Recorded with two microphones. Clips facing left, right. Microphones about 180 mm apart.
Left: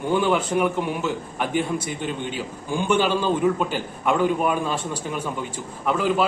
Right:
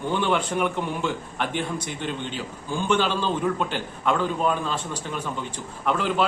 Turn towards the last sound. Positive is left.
turn(degrees=10)  # may be behind; listen again after turning